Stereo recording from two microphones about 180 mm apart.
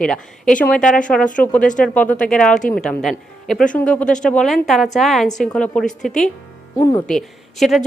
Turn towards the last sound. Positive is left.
turn(degrees=0)  # may be behind; listen again after turning